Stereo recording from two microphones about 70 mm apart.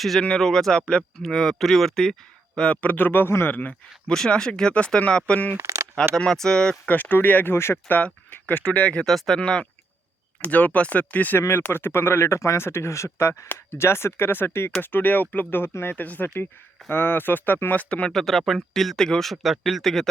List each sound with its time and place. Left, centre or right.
0.0 s speech: centre
2.6 s speech: centre
3.5 s speech: left
4.1 s speech: centre
5.5 s a sound: right
6.1 s speech: centre
6.8 s speech: left
7.5 s speech: left
7.9 s speech: left
9.0 s speech: centre
9.4 s speech: centre
11.3 s speech: left
17.8 s speech: centre